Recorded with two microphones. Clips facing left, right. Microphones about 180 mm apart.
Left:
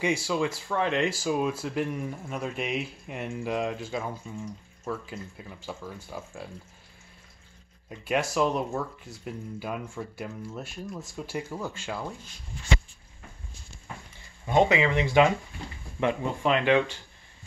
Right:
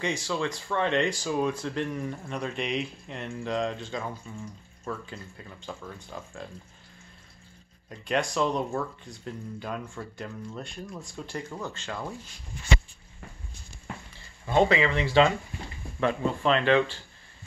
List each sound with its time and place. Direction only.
0.0 s speech: 10° left (ahead or behind)
7.9 s speech: 5° left (ahead or behind)
14.4 s speech: 15° left (ahead or behind)